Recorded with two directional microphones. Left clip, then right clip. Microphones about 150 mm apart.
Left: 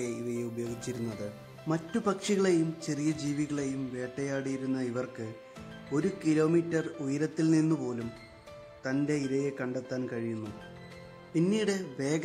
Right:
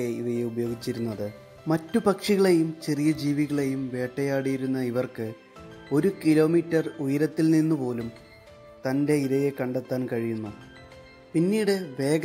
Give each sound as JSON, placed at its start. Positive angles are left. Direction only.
{"t": 0.0, "sound": "speech", "side_deg": -35}
{"t": 9.0, "sound": "speech", "side_deg": -30}
{"t": 11.5, "sound": "speech", "side_deg": -25}